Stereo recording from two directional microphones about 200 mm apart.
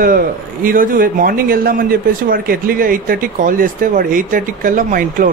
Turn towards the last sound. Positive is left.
turn(degrees=-40)  # may be behind; listen again after turning